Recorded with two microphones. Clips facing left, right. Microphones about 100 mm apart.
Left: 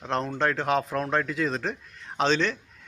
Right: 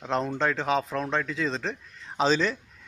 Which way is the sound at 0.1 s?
5° right (ahead or behind).